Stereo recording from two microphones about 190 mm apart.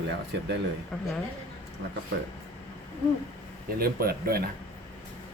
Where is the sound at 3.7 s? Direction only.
50° right (ahead or behind).